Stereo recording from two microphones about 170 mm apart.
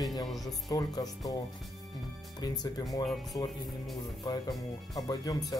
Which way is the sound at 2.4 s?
25° left (ahead or behind).